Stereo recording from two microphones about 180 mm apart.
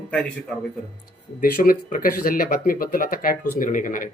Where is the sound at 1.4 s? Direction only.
55° left (ahead or behind).